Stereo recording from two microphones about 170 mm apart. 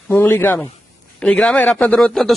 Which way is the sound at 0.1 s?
15° left (ahead or behind).